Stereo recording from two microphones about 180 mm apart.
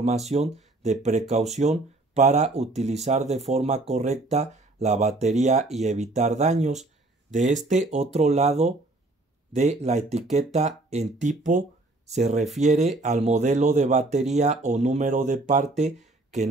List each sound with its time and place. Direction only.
0.3 s speech: 35° right (ahead or behind)